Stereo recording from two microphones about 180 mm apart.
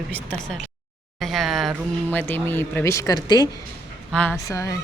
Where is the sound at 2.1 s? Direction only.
10° left (ahead or behind).